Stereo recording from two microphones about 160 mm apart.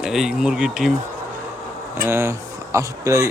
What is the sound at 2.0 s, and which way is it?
Speech, 15° right (ahead or behind).